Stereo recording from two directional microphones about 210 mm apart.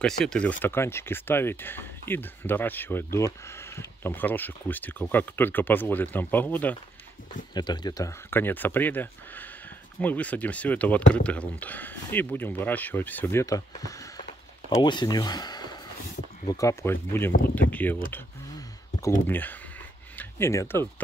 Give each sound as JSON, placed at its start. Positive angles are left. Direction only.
{"t": 0.0, "sound": "speech", "side_deg": 5}
{"t": 7.5, "sound": "speech", "side_deg": 20}
{"t": 19.2, "sound": "speech", "side_deg": 10}